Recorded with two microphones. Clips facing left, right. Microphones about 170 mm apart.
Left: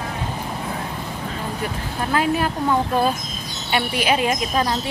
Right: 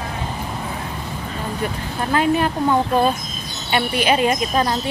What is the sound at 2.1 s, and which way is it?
Speech, 5° left (ahead or behind).